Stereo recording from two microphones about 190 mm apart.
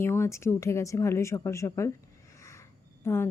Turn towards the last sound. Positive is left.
turn(degrees=15)  # may be behind; listen again after turning